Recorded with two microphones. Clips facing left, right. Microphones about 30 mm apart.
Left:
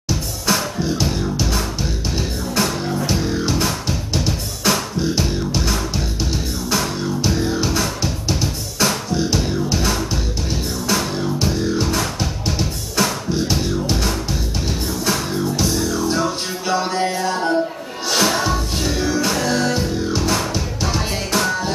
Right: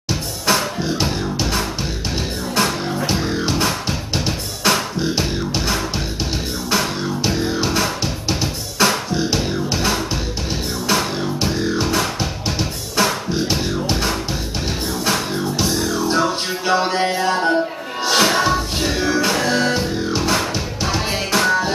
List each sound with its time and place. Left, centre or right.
0.1 s music: centre